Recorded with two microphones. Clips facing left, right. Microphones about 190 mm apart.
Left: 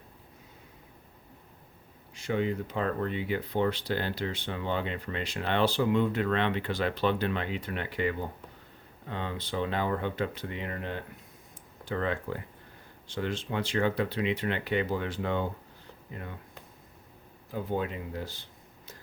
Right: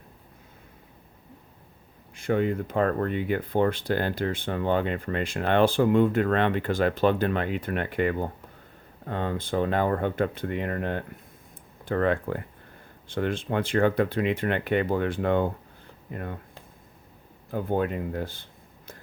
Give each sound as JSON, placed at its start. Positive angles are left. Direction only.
{"t": 2.1, "sound": "speech", "side_deg": -50}
{"t": 17.5, "sound": "speech", "side_deg": -55}